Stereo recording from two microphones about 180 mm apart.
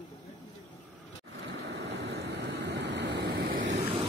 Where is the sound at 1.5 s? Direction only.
75° right (ahead or behind).